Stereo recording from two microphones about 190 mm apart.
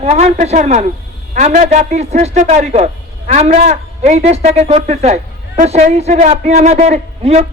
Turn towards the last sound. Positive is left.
turn(degrees=-35)  # may be behind; listen again after turning